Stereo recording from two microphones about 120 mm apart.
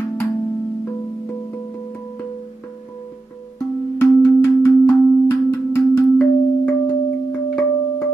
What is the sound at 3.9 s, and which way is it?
Music, 20° left (ahead or behind).